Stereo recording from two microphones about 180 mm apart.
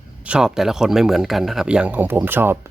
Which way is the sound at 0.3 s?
5° right (ahead or behind).